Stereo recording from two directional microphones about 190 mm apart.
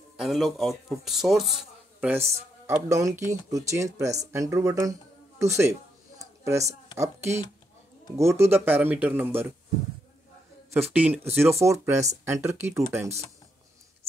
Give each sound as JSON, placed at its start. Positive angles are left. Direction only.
{"t": 0.2, "sound": "speech", "side_deg": 0}
{"t": 5.4, "sound": "a sound", "side_deg": -15}
{"t": 7.0, "sound": "speech", "side_deg": -15}
{"t": 10.7, "sound": "speech", "side_deg": -10}